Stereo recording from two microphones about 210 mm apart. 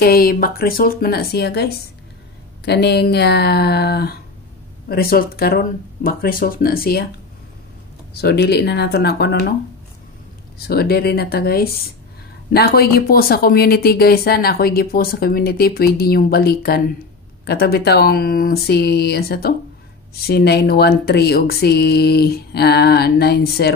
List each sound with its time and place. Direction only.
0.0 s speech: 45° left (ahead or behind)
8.1 s speech: 50° left (ahead or behind)
10.7 s speech: 50° left (ahead or behind)